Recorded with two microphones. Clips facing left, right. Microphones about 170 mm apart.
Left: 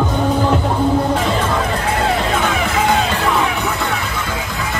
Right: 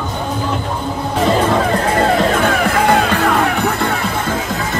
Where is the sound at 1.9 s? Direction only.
45° right (ahead or behind).